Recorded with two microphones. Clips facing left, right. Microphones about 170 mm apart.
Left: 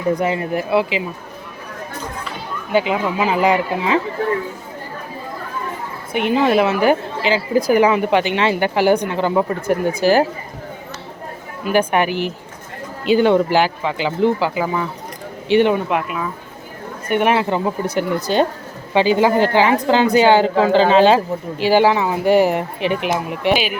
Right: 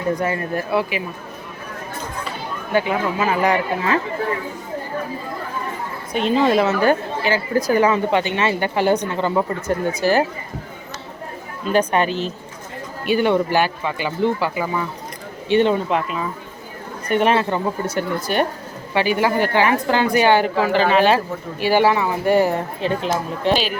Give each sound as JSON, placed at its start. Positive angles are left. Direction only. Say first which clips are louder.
{"t": 0.2, "sound": "a woman's voice", "louder": "left 3 dB", "side_deg": 15}
{"t": 2.7, "sound": "a woman's voice", "louder": "left 2 dB", "side_deg": 20}
{"t": 6.1, "sound": "a woman's voice", "louder": "left 1 dB", "side_deg": 15}
{"t": 11.6, "sound": "a woman's voice", "louder": "left 1 dB", "side_deg": 10}
{"t": 13.2, "sound": "a woman's voice", "louder": "left 1 dB", "side_deg": 15}